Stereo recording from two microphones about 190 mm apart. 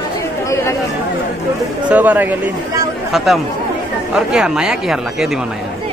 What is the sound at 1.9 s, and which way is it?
Speech, 10° right (ahead or behind).